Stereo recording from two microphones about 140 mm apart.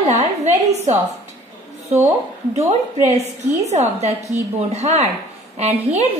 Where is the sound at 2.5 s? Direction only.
55° right (ahead or behind).